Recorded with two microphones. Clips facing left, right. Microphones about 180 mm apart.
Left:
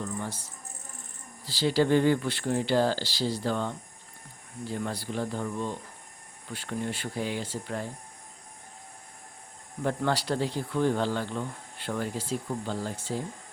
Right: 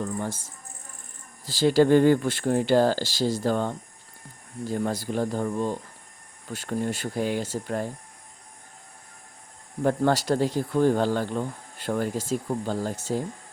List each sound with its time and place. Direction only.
0.2 s speech: 45° right (ahead or behind)
9.8 s speech: 45° right (ahead or behind)